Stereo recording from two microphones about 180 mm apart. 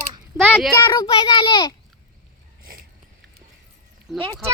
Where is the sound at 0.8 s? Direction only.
25° left (ahead or behind).